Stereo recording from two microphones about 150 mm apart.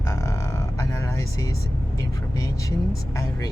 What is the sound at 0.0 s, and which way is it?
Vehicle, 20° left (ahead or behind).